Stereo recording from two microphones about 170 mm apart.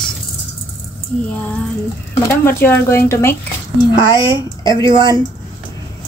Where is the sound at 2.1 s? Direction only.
15° left (ahead or behind).